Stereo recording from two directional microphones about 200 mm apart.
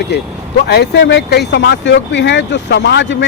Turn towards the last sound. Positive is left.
turn(degrees=60)  # may be behind; listen again after turning